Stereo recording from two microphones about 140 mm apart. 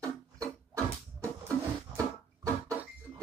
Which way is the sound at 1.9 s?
25° right (ahead or behind).